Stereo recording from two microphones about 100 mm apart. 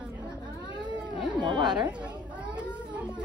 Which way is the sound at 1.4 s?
50° right (ahead or behind).